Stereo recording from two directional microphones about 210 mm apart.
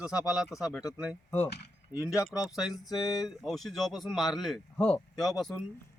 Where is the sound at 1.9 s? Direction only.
15° left (ahead or behind).